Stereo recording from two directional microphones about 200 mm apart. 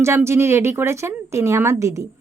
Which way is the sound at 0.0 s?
10° right (ahead or behind).